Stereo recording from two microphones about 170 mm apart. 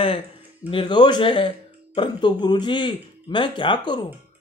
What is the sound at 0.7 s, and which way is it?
Speech, 30° left (ahead or behind).